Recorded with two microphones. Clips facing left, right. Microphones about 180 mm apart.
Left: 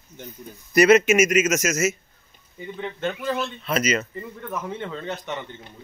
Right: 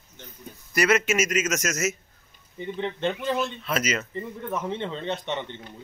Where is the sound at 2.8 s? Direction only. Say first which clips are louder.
Right 1 dB; 25° right (ahead or behind).